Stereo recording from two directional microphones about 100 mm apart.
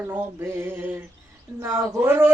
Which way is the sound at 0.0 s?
20° right (ahead or behind).